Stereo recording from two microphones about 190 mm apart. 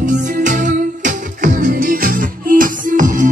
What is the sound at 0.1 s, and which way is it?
Music, 40° right (ahead or behind).